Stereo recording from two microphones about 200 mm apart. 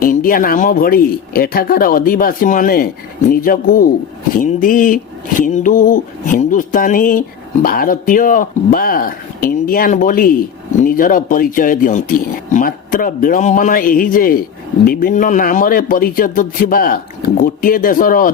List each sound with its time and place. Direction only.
0.0 s speech: 45° left (ahead or behind)
4.4 s a sound: 40° left (ahead or behind)
7.6 s speech: 45° left (ahead or behind)